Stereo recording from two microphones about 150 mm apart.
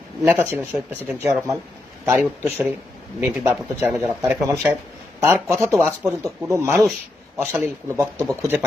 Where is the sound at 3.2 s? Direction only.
15° right (ahead or behind).